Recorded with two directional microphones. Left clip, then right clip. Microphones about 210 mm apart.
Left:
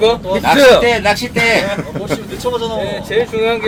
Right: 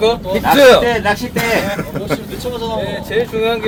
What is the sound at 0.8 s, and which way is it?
Speech, 55° left (ahead or behind).